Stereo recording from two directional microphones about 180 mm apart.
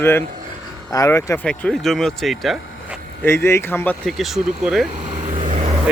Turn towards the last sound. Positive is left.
turn(degrees=-35)  # may be behind; listen again after turning